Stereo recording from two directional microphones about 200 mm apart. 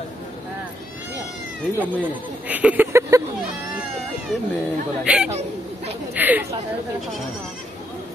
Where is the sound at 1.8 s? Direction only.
10° right (ahead or behind).